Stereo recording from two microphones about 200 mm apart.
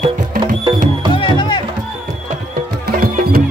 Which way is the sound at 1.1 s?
25° left (ahead or behind).